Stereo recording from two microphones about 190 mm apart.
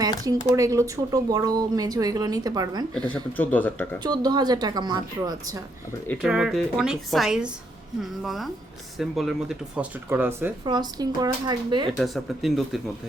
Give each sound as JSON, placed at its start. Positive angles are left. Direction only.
{"t": 0.3, "sound": "speech", "side_deg": -15}
{"t": 3.1, "sound": "speech", "side_deg": 10}
{"t": 4.0, "sound": "speech", "side_deg": -20}
{"t": 6.2, "sound": "speech", "side_deg": 0}
{"t": 10.7, "sound": "speech", "side_deg": -20}
{"t": 11.9, "sound": "speech", "side_deg": 0}